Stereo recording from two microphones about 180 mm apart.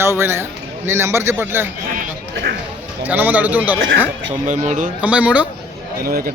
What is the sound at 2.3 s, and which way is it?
Speech, 70° right (ahead or behind).